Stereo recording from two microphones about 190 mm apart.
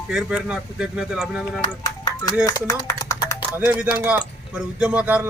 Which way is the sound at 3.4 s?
10° right (ahead or behind).